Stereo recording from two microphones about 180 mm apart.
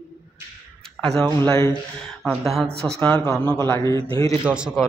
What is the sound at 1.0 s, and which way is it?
Speech, centre (ahead or behind).